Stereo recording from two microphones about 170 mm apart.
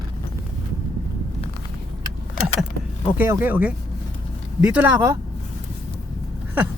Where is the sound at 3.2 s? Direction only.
10° right (ahead or behind).